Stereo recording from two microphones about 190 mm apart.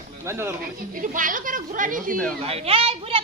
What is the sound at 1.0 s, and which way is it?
Speech, 45° right (ahead or behind).